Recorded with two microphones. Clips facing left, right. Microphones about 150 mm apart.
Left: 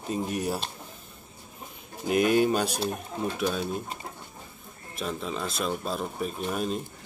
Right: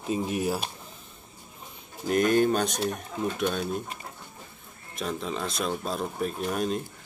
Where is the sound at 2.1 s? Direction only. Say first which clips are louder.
Even; 5° left (ahead or behind).